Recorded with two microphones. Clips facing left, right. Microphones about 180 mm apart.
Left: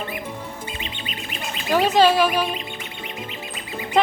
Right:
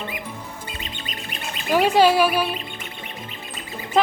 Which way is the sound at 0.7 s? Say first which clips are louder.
Left 2 dB; 40° right (ahead or behind).